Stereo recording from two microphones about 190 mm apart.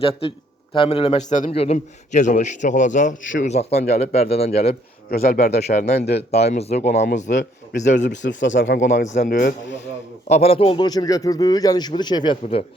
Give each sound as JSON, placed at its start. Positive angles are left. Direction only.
{"t": 0.0, "sound": "a man's voice", "side_deg": 30}
{"t": 5.1, "sound": "a man's voice", "side_deg": 50}
{"t": 5.7, "sound": "a man's voice", "side_deg": 40}
{"t": 6.0, "sound": "a man's voice", "side_deg": 60}
{"t": 6.3, "sound": "a man's voice", "side_deg": 35}
{"t": 7.3, "sound": "speech", "side_deg": 50}
{"t": 7.9, "sound": "a man's voice", "side_deg": 70}
{"t": 8.8, "sound": "a man's voice", "side_deg": 40}
{"t": 10.2, "sound": "a man's voice", "side_deg": 35}